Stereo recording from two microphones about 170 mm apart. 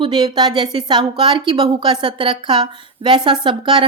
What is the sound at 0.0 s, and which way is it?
Speech, 25° right (ahead or behind).